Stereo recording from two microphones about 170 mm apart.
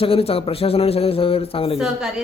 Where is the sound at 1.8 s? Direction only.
5° right (ahead or behind).